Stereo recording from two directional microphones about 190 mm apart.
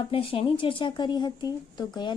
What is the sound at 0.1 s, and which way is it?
Speech, 30° left (ahead or behind).